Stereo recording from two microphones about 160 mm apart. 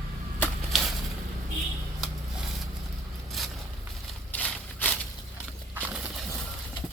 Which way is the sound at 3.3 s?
Centre (ahead or behind).